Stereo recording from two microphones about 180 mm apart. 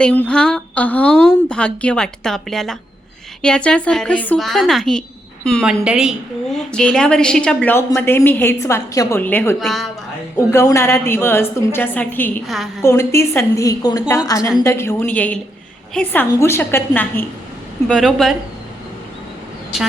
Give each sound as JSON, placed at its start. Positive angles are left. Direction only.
{"t": 0.0, "sound": "a woman's voice", "side_deg": 5}
{"t": 10.3, "sound": "a woman's voice", "side_deg": 15}